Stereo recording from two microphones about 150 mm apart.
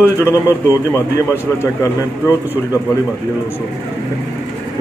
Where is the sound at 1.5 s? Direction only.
15° left (ahead or behind).